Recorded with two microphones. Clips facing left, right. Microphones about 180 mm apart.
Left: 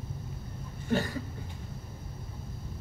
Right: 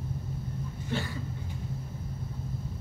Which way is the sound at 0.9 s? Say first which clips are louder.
Left 5 dB; 45° left (ahead or behind).